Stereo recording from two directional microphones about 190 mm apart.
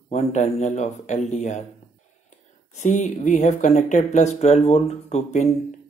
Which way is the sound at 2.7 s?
40° left (ahead or behind).